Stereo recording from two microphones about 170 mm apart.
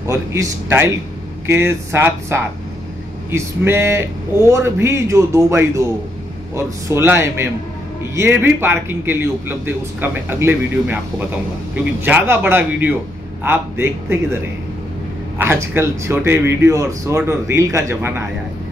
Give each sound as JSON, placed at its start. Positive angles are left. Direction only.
{"t": 0.0, "sound": "speech", "side_deg": -15}
{"t": 15.3, "sound": "speech", "side_deg": -15}